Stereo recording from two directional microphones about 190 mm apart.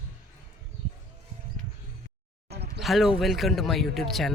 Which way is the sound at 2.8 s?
Centre (ahead or behind).